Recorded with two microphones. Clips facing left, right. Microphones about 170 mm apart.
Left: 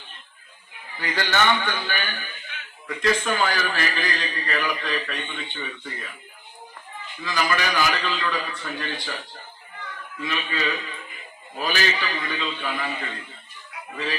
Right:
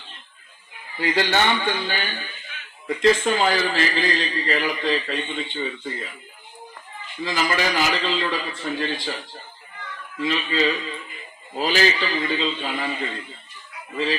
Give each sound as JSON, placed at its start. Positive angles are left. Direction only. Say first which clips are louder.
{"t": 0.9, "sound": "a man's voice", "louder": "right 3 dB", "side_deg": -25}
{"t": 7.2, "sound": "a man's voice", "louder": "right 2 dB", "side_deg": -25}